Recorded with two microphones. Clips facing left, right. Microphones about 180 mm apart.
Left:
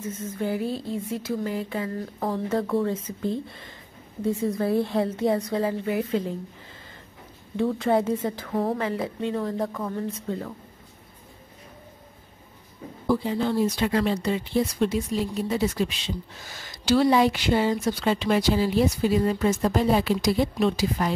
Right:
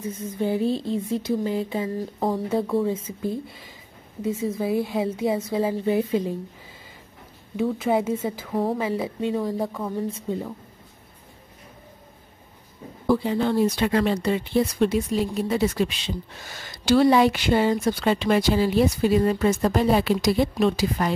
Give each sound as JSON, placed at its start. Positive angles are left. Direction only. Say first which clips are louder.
{"t": 0.0, "sound": "speech", "louder": "right 3 dB", "side_deg": -15}
{"t": 2.3, "sound": "a woman's voice", "louder": "even", "side_deg": -10}
{"t": 7.5, "sound": "speech", "louder": "even", "side_deg": -5}
{"t": 13.1, "sound": "a woman's voice", "louder": "right 2 dB", "side_deg": -65}